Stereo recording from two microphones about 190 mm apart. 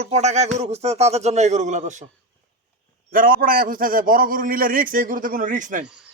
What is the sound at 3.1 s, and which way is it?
A man's voice, 50° right (ahead or behind).